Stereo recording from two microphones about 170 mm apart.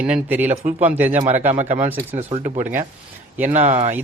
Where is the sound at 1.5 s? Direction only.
45° right (ahead or behind).